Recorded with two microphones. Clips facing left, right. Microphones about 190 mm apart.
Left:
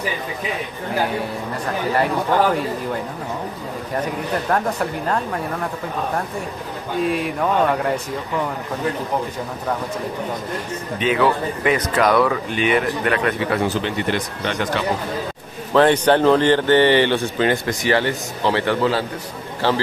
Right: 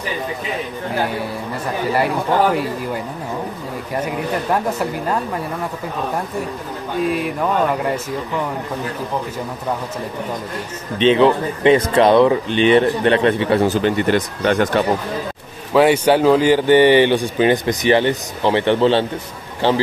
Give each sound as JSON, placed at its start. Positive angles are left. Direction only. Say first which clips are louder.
{"t": 4.0, "sound": "speech", "louder": "right 2 dB", "side_deg": -5}
{"t": 7.0, "sound": "speech", "louder": "right 1 dB", "side_deg": 0}
{"t": 11.0, "sound": "speech", "louder": "right 5 dB", "side_deg": -25}
{"t": 13.8, "sound": "speech", "louder": "right 6 dB", "side_deg": -50}
{"t": 15.7, "sound": "speech", "louder": "right 1 dB", "side_deg": -10}